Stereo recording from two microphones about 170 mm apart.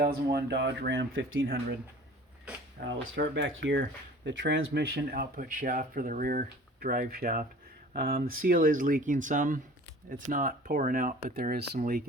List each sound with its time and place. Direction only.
0.0 s speech: 65° right (ahead or behind); by 1.0 s 90° right
2.8 s speech: 70° right (ahead or behind)
3.2 s speech: 90° right; by 12.0 s 60° right (ahead or behind)